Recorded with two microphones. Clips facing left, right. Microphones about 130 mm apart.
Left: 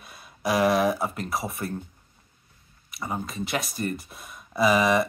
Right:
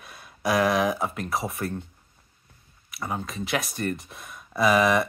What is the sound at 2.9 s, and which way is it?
Speech, centre (ahead or behind).